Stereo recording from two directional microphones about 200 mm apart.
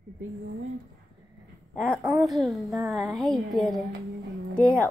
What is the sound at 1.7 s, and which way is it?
A woman's voice, 5° left (ahead or behind).